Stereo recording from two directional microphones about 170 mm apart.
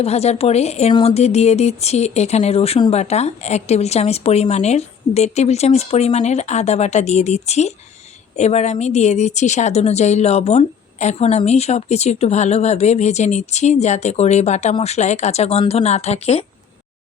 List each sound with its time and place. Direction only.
0.0 s a woman's voice: 40° left (ahead or behind)